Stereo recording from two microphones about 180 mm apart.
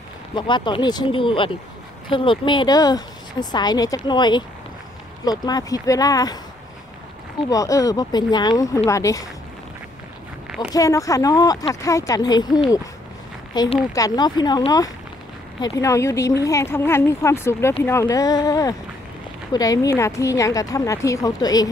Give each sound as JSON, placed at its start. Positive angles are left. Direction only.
{"t": 0.3, "sound": "speech", "side_deg": 25}
{"t": 7.4, "sound": "speech", "side_deg": 20}
{"t": 10.7, "sound": "a woman's voice", "side_deg": 20}